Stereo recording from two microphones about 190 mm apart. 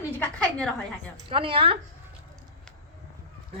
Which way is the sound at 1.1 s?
30° right (ahead or behind).